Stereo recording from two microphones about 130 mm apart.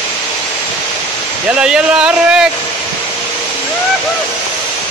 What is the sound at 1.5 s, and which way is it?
Speech, 5° right (ahead or behind).